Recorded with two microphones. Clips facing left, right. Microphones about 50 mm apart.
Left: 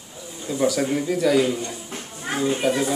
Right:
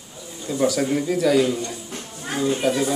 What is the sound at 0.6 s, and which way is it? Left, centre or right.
Speech, centre.